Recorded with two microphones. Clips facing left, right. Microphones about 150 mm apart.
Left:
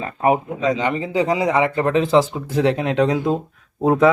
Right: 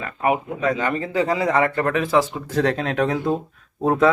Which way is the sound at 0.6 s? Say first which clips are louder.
Left 2 dB; 20° left (ahead or behind).